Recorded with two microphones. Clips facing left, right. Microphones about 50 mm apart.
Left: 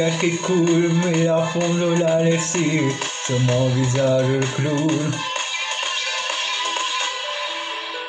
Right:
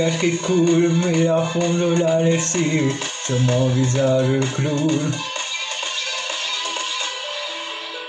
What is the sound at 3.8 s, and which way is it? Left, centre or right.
Speech, centre.